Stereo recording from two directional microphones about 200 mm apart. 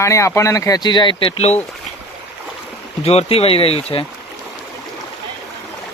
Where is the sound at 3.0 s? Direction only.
30° left (ahead or behind).